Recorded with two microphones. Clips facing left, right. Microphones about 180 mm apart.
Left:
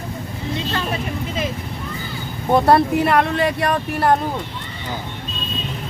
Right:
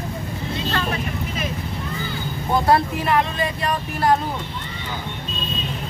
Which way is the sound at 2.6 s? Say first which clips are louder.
Left 3 dB; 60° left (ahead or behind).